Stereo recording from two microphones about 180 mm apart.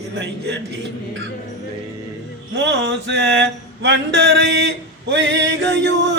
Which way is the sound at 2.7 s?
75° right (ahead or behind).